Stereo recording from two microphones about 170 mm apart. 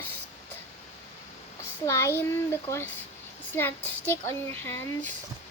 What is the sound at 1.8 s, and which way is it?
Speech, 15° left (ahead or behind).